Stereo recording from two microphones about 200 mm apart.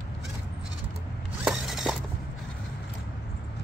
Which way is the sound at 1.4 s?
Centre (ahead or behind).